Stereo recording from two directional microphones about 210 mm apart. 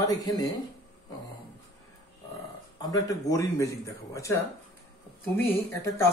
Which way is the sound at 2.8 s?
15° left (ahead or behind).